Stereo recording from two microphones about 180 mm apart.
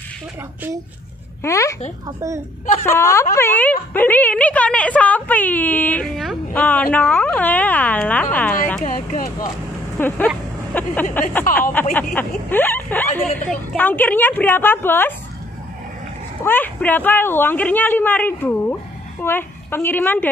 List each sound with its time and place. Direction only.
1.4 s speech: 15° left (ahead or behind)
2.0 s a woman's voice: 15° right (ahead or behind)
2.8 s speech: 15° left (ahead or behind)
8.8 s speech: 50° left (ahead or behind)
9.9 s a sound: 10° left (ahead or behind)
11.9 s speech: 10° left (ahead or behind)
16.4 s speech: 10° left (ahead or behind)